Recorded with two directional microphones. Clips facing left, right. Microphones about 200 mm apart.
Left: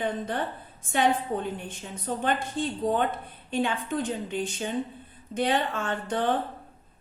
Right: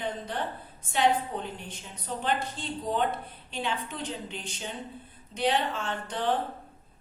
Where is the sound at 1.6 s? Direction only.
50° left (ahead or behind).